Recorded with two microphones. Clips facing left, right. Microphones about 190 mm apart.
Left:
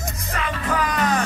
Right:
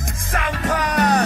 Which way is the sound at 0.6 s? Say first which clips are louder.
Right 3 dB; 40° right (ahead or behind).